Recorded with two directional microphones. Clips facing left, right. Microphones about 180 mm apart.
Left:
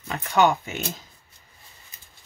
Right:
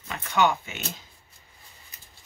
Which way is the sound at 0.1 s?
40° left (ahead or behind).